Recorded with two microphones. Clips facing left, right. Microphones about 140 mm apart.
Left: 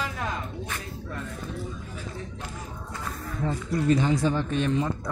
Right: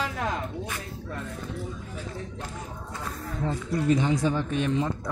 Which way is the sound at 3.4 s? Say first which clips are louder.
Left 1 dB; 20° right (ahead or behind).